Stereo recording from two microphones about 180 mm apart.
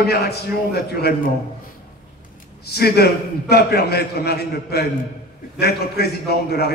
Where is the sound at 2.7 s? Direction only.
60° left (ahead or behind).